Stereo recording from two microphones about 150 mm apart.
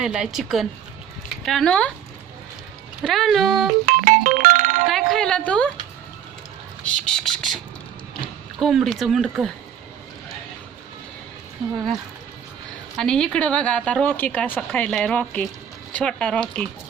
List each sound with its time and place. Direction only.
0.0 s speech: 5° right (ahead or behind)
3.0 s speech: centre (ahead or behind)
3.8 s music: 60° right (ahead or behind)
4.9 s a sound: centre (ahead or behind)
6.9 s speech: 5° left (ahead or behind)
8.5 s speech: centre (ahead or behind)
13.0 s a woman's voice: 5° left (ahead or behind)